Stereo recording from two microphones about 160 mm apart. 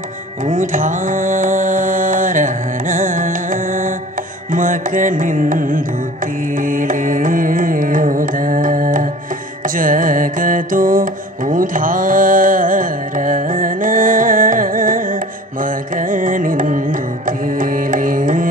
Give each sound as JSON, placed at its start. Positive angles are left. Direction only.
{"t": 0.5, "sound": "mantra", "side_deg": -55}
{"t": 4.5, "sound": "music", "side_deg": -55}
{"t": 6.6, "sound": "carnatic music", "side_deg": -55}
{"t": 9.8, "sound": "mantra", "side_deg": -55}
{"t": 15.6, "sound": "carnatic music", "side_deg": -60}
{"t": 17.6, "sound": "music", "side_deg": -60}